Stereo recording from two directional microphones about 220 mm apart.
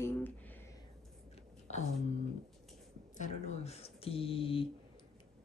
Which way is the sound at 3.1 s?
30° left (ahead or behind).